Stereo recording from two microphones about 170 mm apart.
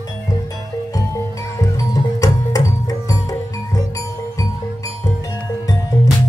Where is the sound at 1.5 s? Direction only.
20° left (ahead or behind).